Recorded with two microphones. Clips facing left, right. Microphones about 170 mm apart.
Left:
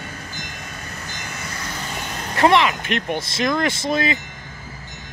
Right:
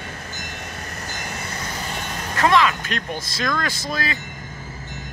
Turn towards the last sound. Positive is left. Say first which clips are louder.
# left 6 dB
turn(degrees=25)  # may be behind; listen again after turning